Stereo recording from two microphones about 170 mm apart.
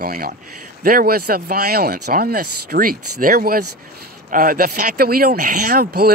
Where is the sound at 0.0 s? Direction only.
60° right (ahead or behind).